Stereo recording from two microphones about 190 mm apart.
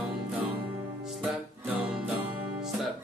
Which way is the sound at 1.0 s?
10° right (ahead or behind).